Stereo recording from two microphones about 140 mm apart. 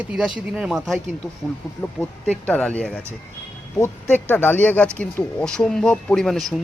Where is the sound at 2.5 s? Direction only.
10° left (ahead or behind).